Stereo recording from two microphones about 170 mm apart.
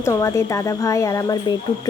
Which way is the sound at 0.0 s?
20° left (ahead or behind).